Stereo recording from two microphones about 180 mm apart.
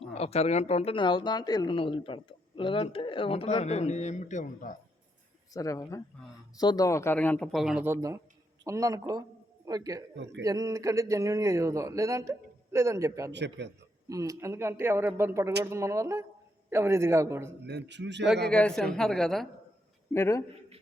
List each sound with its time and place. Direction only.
0.1 s speech: 35° left (ahead or behind)
5.5 s speech: 20° left (ahead or behind); by 7.9 s centre (ahead or behind)
7.9 s speech: 15° right (ahead or behind)
13.3 s a man's voice: 75° right (ahead or behind)
14.1 s speech: 20° right (ahead or behind)
17.7 s a man's voice: 70° right (ahead or behind)
18.5 s a woman's voice: 5° left (ahead or behind)
20.1 s speech: 15° left (ahead or behind)